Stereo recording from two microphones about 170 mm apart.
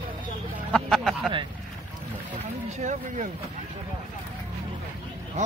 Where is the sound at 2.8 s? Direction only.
45° right (ahead or behind).